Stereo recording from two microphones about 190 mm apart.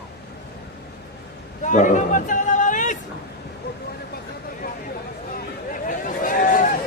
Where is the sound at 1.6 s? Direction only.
40° left (ahead or behind).